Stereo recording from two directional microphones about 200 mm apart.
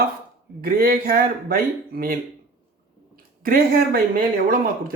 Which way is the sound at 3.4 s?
45° right (ahead or behind).